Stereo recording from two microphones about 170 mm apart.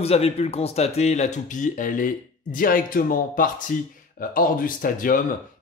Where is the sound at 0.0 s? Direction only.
35° left (ahead or behind).